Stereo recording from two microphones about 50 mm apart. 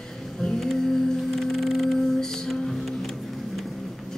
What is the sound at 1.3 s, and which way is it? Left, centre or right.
Boat, centre.